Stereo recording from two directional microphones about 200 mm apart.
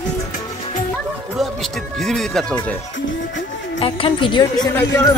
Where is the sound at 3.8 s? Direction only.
25° left (ahead or behind).